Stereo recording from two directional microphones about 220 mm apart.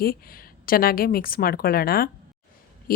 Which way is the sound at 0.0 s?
40° left (ahead or behind).